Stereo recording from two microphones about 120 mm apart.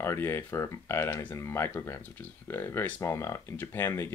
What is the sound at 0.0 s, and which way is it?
Speech, 20° left (ahead or behind).